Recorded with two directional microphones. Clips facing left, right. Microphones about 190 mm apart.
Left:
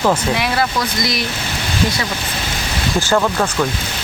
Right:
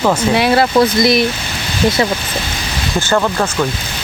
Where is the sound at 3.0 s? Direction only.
Centre (ahead or behind).